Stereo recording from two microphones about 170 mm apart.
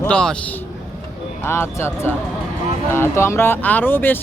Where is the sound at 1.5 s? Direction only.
15° left (ahead or behind).